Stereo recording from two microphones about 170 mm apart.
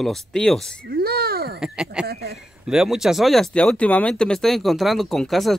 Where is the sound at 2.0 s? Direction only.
70° right (ahead or behind).